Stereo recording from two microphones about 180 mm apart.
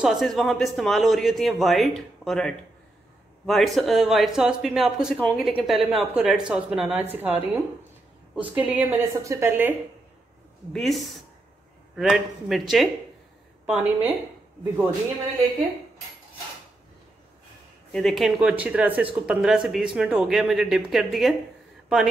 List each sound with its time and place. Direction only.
0.0 s a man's voice: centre (ahead or behind)
10.7 s a man's voice: centre (ahead or behind)
17.9 s a man's voice: centre (ahead or behind)